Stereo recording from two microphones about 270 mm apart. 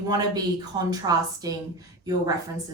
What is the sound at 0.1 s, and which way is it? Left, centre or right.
A woman's voice, centre.